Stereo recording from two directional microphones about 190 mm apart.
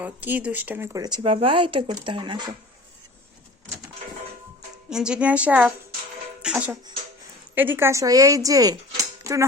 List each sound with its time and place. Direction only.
0.0 s speech: 10° right (ahead or behind); by 2.4 s 25° right (ahead or behind)
4.9 s a woman's voice: 5° right (ahead or behind)